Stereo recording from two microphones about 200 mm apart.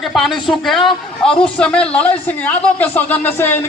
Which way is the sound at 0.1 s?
Centre (ahead or behind).